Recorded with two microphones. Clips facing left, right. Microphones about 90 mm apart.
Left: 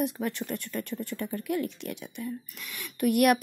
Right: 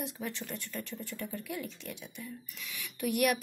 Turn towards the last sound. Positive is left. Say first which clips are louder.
# left 7 dB
turn(degrees=60)  # may be behind; listen again after turning